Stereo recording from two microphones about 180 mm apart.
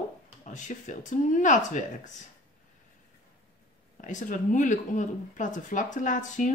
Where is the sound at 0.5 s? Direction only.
45° left (ahead or behind).